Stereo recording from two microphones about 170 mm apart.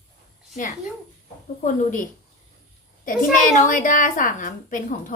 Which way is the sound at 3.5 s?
50° left (ahead or behind).